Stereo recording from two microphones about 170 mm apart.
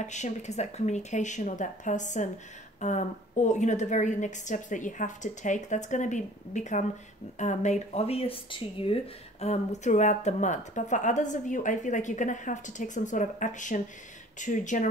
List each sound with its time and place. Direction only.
0.0 s speech: 45° left (ahead or behind)